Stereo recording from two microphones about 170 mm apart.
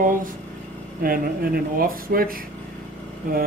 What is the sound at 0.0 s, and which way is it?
Speech, 55° right (ahead or behind).